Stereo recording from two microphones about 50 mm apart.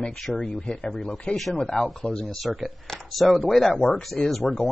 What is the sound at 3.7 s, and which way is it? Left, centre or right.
Speech, centre.